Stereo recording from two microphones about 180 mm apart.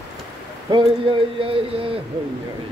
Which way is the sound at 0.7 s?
30° right (ahead or behind).